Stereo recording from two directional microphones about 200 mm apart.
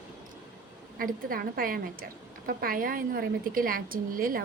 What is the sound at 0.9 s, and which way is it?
A woman's voice, 45° right (ahead or behind).